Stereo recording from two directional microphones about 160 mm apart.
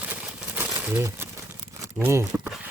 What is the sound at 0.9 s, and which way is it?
Speech, 15° right (ahead or behind).